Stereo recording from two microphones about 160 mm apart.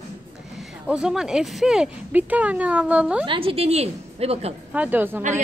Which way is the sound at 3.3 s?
35° right (ahead or behind).